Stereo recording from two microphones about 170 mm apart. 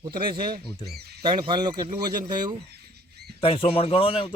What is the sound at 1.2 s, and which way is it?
Speech, 30° right (ahead or behind).